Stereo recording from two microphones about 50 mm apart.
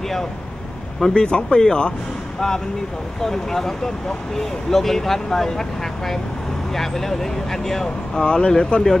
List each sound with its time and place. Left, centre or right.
1.0 s speech: centre
3.2 s speech: centre